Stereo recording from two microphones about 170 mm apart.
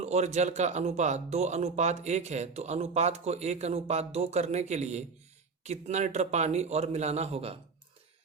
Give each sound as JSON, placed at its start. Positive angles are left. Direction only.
{"t": 0.0, "sound": "speech", "side_deg": -40}